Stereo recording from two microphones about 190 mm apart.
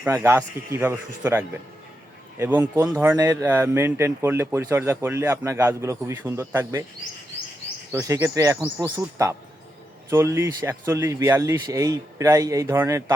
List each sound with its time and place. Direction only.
0.0 s speech: 10° right (ahead or behind)
7.9 s speech: 15° right (ahead or behind)